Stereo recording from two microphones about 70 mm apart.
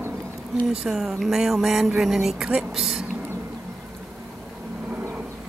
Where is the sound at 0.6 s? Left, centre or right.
Centre.